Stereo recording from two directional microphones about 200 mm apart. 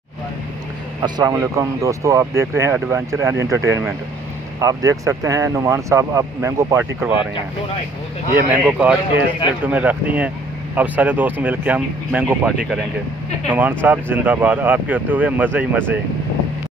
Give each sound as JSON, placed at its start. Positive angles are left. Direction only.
{"t": 1.0, "sound": "speech", "side_deg": -20}
{"t": 8.4, "sound": "speech", "side_deg": -10}